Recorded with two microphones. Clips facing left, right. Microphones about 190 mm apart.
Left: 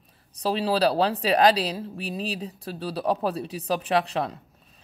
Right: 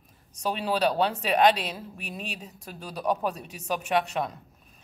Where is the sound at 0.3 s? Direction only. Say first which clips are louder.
Left 4 dB; 30° left (ahead or behind).